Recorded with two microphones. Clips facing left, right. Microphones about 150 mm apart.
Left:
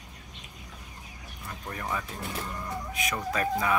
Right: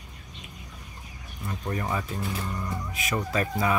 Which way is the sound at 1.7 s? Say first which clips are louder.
Right 4 dB; 10° right (ahead or behind).